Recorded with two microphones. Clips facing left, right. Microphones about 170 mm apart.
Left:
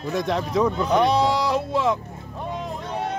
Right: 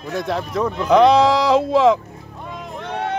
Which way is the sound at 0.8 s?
90° right.